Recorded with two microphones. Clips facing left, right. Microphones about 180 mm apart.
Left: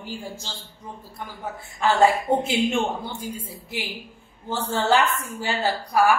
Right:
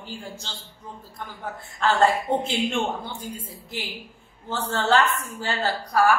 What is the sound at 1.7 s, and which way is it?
A woman's voice, 10° left (ahead or behind).